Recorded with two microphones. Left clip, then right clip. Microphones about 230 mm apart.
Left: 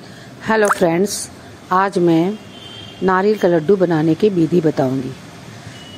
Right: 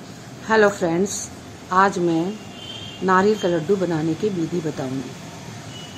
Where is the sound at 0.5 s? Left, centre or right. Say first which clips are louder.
Left 3 dB; left.